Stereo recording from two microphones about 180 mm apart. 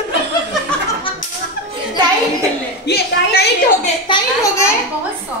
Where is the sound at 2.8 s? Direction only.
65° left (ahead or behind).